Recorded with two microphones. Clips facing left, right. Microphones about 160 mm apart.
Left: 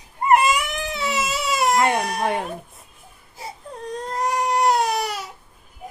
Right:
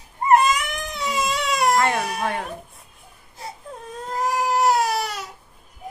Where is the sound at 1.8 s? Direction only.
20° left (ahead or behind).